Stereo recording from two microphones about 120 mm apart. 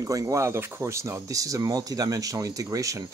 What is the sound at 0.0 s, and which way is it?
Speech, 25° right (ahead or behind).